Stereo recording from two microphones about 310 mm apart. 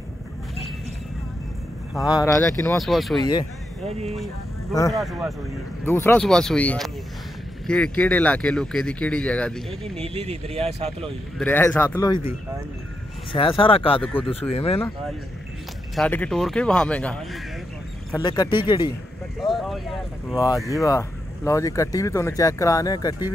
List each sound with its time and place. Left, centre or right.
2.0 s speech: centre
3.9 s speech: centre
4.9 s speech: centre
10.0 s speech: centre
11.3 s speech: centre
13.3 s speech: centre
14.0 s speech: centre
14.5 s speech: centre
15.9 s speech: centre
19.4 s speech: centre